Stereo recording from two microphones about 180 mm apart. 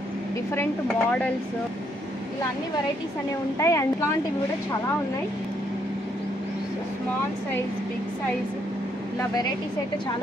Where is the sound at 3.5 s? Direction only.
15° left (ahead or behind).